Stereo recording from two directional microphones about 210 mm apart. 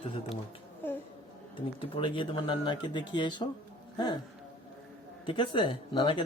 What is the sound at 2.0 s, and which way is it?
Speech, 25° left (ahead or behind).